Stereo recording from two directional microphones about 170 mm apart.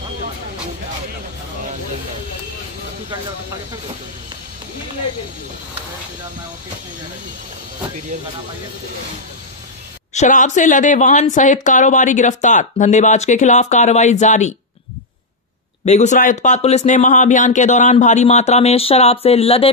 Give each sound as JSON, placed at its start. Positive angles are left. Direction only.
{"t": 10.1, "sound": "a woman's voice", "side_deg": 45}
{"t": 15.8, "sound": "a woman's voice", "side_deg": 40}